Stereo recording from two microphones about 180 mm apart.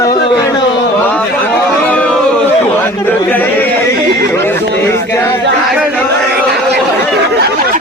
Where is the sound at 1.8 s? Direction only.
5° left (ahead or behind).